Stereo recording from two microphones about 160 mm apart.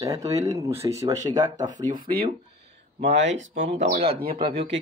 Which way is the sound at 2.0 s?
65° right (ahead or behind).